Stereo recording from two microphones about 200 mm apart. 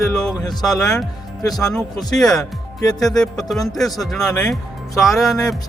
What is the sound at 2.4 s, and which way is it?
Speech, 20° left (ahead or behind).